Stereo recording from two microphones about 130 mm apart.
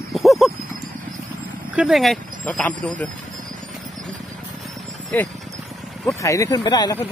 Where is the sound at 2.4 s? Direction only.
10° left (ahead or behind).